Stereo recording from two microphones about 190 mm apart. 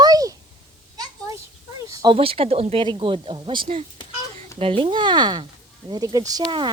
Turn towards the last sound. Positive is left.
turn(degrees=-20)  # may be behind; listen again after turning